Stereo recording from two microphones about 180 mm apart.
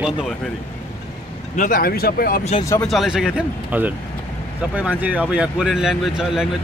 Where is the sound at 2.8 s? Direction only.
Centre (ahead or behind).